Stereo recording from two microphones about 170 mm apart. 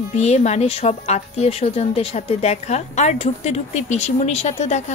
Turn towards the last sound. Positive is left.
turn(degrees=40)  # may be behind; listen again after turning